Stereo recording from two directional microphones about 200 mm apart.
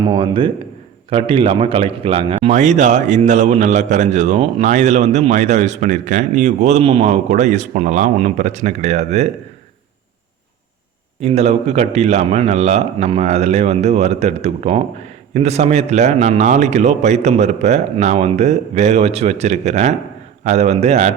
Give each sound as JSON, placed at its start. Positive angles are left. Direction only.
{"t": 0.0, "sound": "a man's voice", "side_deg": -25}
{"t": 11.2, "sound": "a man's voice", "side_deg": -30}